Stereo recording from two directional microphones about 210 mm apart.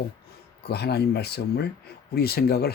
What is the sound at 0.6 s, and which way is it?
Speech, 50° left (ahead or behind).